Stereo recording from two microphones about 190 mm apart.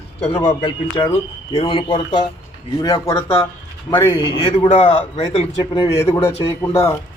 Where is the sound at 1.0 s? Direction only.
25° left (ahead or behind).